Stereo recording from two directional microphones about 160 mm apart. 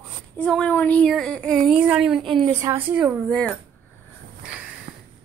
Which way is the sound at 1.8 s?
5° right (ahead or behind).